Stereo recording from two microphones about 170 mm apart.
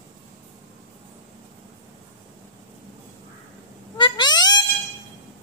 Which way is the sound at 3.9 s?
25° left (ahead or behind).